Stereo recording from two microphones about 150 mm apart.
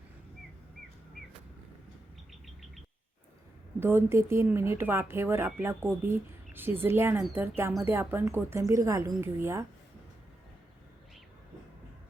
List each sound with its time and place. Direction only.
3.8 s speech: 15° right (ahead or behind)